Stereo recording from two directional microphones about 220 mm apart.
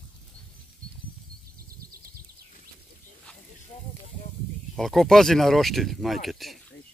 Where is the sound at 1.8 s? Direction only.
40° right (ahead or behind).